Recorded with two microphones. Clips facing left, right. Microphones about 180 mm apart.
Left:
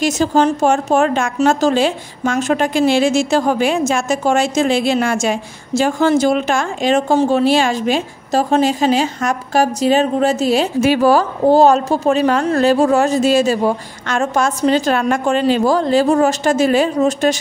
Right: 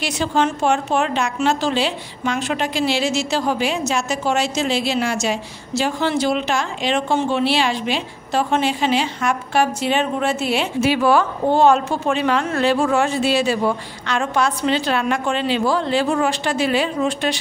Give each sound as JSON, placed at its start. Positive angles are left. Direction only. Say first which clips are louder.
{"t": 0.0, "sound": "speech", "louder": "left 6 dB", "side_deg": 40}